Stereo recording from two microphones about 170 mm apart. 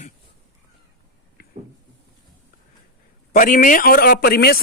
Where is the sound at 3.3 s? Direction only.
50° left (ahead or behind); by 4.6 s 70° left (ahead or behind).